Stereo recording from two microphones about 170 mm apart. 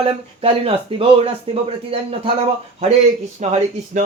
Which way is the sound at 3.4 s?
45° right (ahead or behind).